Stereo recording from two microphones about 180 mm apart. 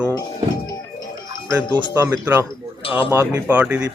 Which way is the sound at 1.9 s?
15° right (ahead or behind).